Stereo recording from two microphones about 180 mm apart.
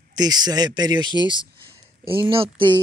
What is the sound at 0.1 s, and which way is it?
A man's voice, 25° right (ahead or behind).